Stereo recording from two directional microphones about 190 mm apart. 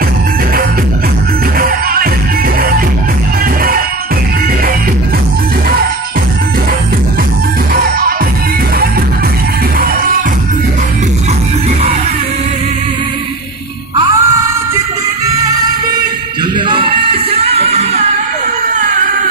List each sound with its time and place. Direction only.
13.9 s music: 20° right (ahead or behind)
16.5 s music: 25° right (ahead or behind)